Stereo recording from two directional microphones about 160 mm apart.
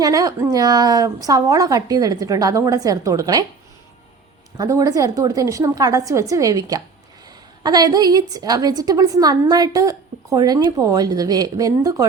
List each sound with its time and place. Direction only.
0.0 s a woman's voice: 20° right (ahead or behind)
4.5 s a woman's voice: 20° right (ahead or behind)